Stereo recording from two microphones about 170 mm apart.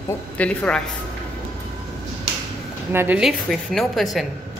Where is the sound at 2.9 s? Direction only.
15° right (ahead or behind).